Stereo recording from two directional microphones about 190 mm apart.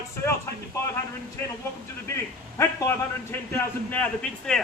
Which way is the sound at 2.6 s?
15° left (ahead or behind).